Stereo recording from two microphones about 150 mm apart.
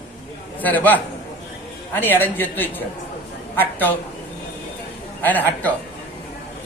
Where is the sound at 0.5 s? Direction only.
10° left (ahead or behind).